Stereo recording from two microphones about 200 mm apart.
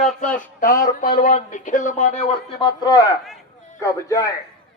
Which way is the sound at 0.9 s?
45° left (ahead or behind).